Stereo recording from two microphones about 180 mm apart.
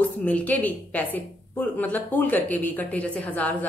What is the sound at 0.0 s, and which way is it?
A woman's voice, 10° left (ahead or behind).